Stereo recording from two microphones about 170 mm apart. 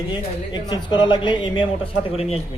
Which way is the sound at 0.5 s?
25° left (ahead or behind).